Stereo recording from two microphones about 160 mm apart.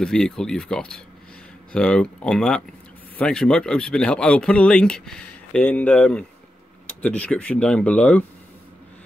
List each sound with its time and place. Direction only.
0.0 s speech: 5° left (ahead or behind)